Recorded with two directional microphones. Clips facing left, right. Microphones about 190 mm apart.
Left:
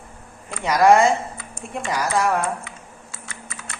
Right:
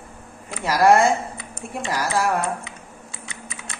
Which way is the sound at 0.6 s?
5° right (ahead or behind).